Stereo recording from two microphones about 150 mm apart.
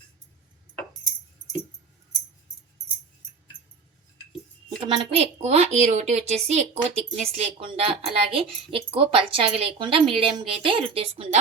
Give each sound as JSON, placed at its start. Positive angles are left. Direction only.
{"t": 4.9, "sound": "a woman's voice", "side_deg": -45}